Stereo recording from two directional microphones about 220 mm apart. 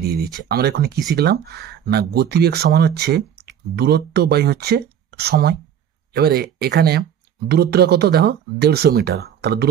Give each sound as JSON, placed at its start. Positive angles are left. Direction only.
{"t": 0.0, "sound": "speech", "side_deg": -45}